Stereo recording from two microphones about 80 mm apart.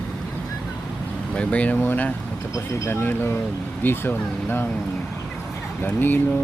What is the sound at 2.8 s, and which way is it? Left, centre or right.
Speech, left.